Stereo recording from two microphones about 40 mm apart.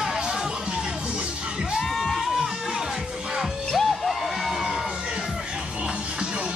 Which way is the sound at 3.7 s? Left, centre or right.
Centre.